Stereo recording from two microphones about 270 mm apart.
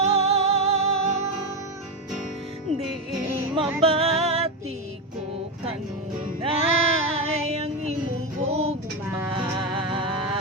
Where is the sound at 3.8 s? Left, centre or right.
Right.